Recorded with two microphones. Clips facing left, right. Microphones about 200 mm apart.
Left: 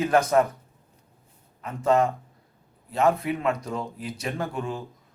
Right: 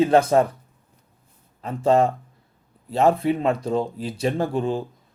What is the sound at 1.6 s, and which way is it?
Speech, 30° right (ahead or behind).